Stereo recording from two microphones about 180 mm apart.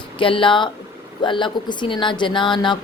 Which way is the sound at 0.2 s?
30° left (ahead or behind).